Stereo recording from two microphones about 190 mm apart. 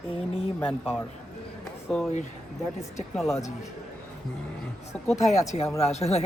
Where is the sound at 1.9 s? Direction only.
5° left (ahead or behind).